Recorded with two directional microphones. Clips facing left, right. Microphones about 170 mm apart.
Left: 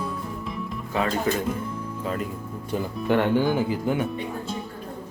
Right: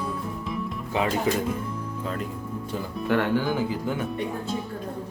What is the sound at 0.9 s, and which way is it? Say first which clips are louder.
Speech: even; 10° right (ahead or behind).